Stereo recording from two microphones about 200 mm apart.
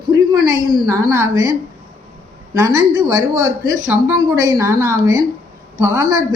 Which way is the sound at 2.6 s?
15° right (ahead or behind).